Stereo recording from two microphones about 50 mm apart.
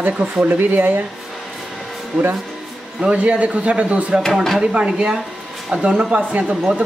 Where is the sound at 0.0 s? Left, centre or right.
Right.